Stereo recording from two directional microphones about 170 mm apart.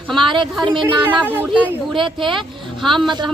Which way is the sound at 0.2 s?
30° right (ahead or behind).